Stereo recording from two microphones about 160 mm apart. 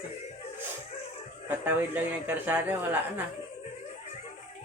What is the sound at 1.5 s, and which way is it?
Speech, 10° right (ahead or behind).